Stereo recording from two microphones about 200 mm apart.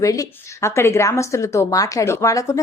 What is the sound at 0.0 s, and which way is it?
A woman's voice, 15° left (ahead or behind).